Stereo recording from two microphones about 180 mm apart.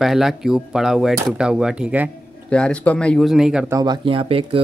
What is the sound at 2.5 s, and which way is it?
A man's voice, 5° left (ahead or behind).